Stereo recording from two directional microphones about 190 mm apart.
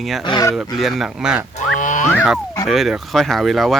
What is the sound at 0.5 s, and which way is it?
Speech, centre (ahead or behind).